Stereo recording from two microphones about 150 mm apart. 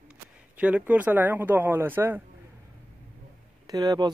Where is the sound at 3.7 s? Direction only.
25° right (ahead or behind).